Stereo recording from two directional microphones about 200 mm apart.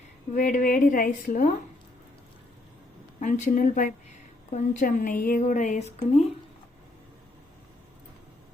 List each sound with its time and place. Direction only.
0.3 s a woman's voice: 40° left (ahead or behind)
3.2 s a woman's voice: 40° left (ahead or behind)